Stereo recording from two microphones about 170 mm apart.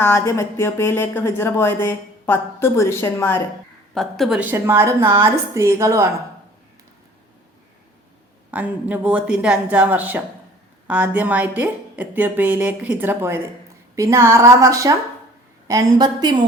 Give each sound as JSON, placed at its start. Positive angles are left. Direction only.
{"t": 0.0, "sound": "speech", "side_deg": 15}
{"t": 3.9, "sound": "a woman's voice", "side_deg": 0}
{"t": 8.4, "sound": "a woman's voice", "side_deg": -10}